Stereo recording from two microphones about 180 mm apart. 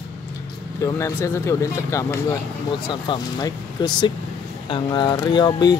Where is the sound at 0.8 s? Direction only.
15° left (ahead or behind).